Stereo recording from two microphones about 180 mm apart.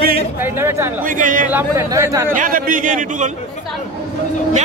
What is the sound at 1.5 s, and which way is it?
Speech, 15° right (ahead or behind).